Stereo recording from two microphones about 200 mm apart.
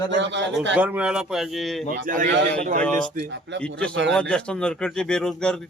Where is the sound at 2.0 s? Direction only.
40° right (ahead or behind).